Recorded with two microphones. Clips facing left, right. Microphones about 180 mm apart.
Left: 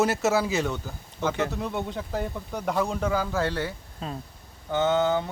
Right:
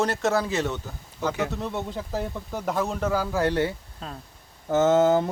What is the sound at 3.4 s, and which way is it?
Speech, 20° right (ahead or behind).